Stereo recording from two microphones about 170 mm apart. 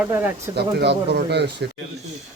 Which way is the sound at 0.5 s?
75° right (ahead or behind).